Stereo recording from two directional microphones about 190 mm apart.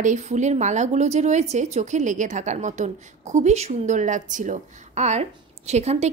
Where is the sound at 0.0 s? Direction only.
35° right (ahead or behind).